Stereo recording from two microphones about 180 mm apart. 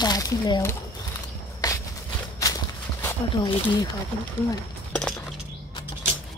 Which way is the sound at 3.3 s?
25° left (ahead or behind).